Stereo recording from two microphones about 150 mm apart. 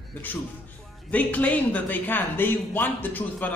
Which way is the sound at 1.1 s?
10° left (ahead or behind).